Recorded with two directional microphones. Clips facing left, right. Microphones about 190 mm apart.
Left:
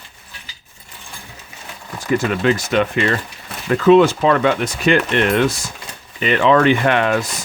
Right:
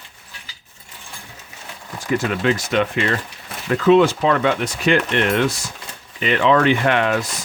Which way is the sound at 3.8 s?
50° left (ahead or behind).